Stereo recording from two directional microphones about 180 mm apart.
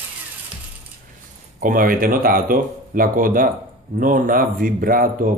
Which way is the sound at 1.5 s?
50° right (ahead or behind).